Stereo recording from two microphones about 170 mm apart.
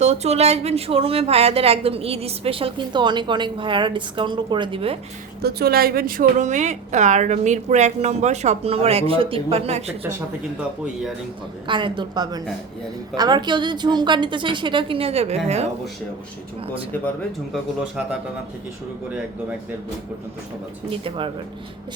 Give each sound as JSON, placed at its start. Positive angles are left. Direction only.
{"t": 0.0, "sound": "speech", "side_deg": -40}
{"t": 5.4, "sound": "a woman's voice", "side_deg": -70}
{"t": 10.0, "sound": "speech", "side_deg": -10}
{"t": 11.7, "sound": "a woman's voice", "side_deg": -30}
{"t": 17.5, "sound": "speech", "side_deg": -5}
{"t": 20.9, "sound": "speech", "side_deg": -30}